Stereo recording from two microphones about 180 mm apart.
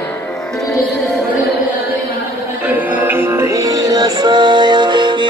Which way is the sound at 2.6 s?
10° right (ahead or behind).